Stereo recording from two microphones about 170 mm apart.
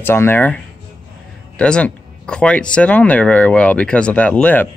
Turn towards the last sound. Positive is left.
turn(degrees=10)  # may be behind; listen again after turning